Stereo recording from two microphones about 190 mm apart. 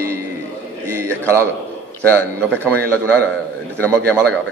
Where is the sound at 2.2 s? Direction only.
10° left (ahead or behind).